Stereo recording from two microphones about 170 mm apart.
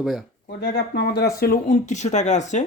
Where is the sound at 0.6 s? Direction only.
70° left (ahead or behind).